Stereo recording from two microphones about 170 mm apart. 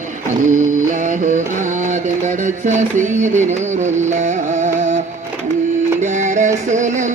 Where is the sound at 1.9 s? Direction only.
45° right (ahead or behind).